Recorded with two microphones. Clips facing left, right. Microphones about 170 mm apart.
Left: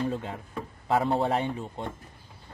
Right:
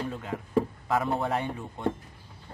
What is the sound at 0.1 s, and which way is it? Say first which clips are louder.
Speech: right 5 dB; 30° left (ahead or behind).